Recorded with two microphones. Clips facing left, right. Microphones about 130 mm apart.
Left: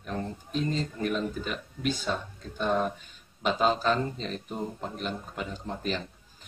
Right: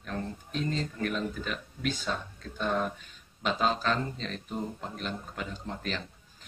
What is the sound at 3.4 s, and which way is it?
A man's voice, 10° left (ahead or behind).